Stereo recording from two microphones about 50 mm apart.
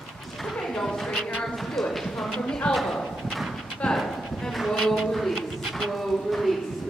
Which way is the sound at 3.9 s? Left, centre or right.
Centre.